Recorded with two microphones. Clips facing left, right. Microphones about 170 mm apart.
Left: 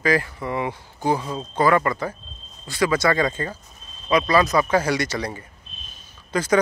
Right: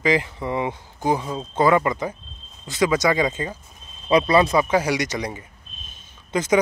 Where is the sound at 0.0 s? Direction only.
20° right (ahead or behind).